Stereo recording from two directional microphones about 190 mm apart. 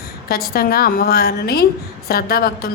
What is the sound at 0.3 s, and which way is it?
A woman's voice, 55° left (ahead or behind).